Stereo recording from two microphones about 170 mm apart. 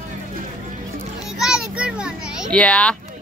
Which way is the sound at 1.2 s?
5° right (ahead or behind).